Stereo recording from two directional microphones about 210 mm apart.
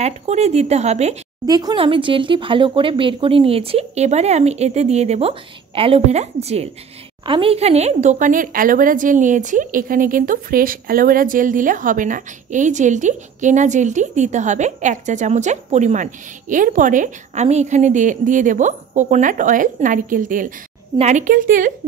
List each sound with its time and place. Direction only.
0.0 s a woman's voice: 30° right (ahead or behind)
1.4 s a woman's voice: 20° right (ahead or behind); by 21.7 s 40° right (ahead or behind)